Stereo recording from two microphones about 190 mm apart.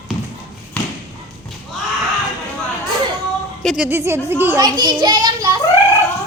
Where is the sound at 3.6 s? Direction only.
Centre (ahead or behind).